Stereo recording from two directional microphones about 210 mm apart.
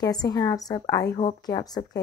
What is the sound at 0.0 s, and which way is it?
A woman's voice, 20° left (ahead or behind).